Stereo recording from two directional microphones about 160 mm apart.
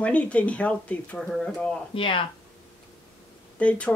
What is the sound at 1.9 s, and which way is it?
Speech, 35° left (ahead or behind).